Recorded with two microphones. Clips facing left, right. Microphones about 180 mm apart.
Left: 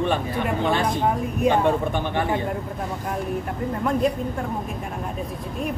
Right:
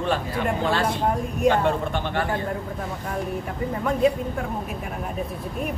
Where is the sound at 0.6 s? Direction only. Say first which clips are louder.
Left 2 dB; 20° left (ahead or behind).